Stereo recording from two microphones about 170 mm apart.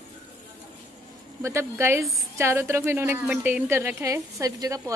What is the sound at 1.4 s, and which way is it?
A woman's voice, 15° right (ahead or behind).